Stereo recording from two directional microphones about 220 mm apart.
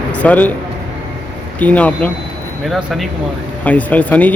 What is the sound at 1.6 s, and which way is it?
A man's voice, 5° left (ahead or behind).